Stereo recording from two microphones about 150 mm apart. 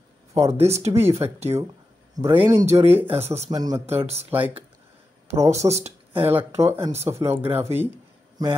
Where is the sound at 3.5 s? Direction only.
25° right (ahead or behind).